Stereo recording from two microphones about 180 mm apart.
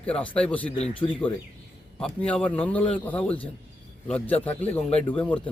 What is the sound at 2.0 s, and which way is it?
A man's voice, 5° left (ahead or behind).